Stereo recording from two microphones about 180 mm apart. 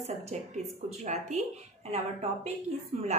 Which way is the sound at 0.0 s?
35° right (ahead or behind).